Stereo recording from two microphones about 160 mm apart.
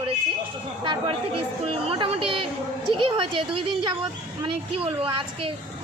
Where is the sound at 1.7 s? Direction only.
35° right (ahead or behind).